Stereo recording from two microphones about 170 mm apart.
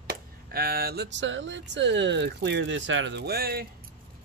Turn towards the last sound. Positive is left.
turn(degrees=-65)  # may be behind; listen again after turning